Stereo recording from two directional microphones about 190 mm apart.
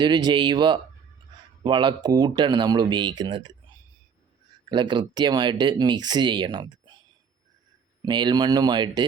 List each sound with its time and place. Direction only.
0.0 s speech: 25° right (ahead or behind)
4.7 s speech: 25° right (ahead or behind)
8.0 s speech: 25° right (ahead or behind)